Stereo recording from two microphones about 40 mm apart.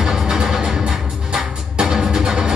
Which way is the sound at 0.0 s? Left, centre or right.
Centre.